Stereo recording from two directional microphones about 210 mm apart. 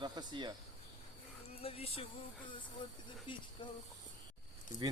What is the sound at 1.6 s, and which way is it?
Speech, 25° left (ahead or behind).